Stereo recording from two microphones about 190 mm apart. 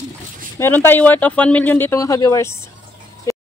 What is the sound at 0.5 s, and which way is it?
Speech, 15° left (ahead or behind).